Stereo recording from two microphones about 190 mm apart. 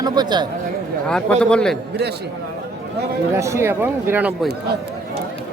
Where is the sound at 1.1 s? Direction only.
5° left (ahead or behind).